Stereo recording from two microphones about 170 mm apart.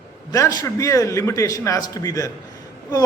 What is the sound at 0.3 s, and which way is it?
A man's voice, 20° left (ahead or behind).